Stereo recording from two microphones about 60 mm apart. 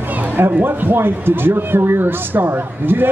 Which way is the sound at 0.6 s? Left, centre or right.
Right.